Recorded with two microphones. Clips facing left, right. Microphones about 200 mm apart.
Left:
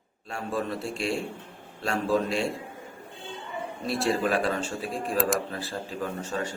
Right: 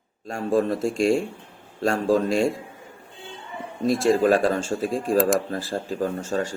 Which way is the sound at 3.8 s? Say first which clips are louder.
Right 8 dB; 45° right (ahead or behind).